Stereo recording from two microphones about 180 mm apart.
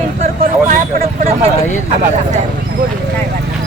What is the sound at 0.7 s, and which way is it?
Vehicle, 50° right (ahead or behind).